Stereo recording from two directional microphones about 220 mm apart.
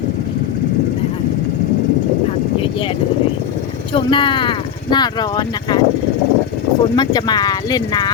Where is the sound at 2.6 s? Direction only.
25° left (ahead or behind).